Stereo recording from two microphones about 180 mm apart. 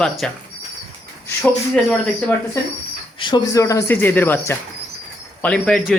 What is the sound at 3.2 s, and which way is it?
Speech, 20° left (ahead or behind).